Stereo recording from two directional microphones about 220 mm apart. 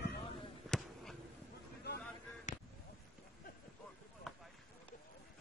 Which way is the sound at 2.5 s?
35° left (ahead or behind).